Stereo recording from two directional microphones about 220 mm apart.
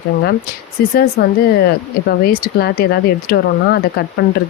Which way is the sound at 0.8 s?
45° left (ahead or behind).